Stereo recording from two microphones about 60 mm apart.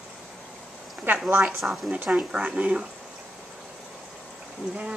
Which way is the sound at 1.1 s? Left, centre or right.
Right.